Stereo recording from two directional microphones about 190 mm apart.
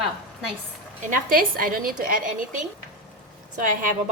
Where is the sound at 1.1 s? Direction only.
50° right (ahead or behind).